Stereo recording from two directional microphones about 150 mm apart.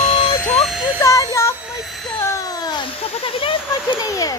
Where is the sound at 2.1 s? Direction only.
20° left (ahead or behind); by 3.6 s 35° left (ahead or behind).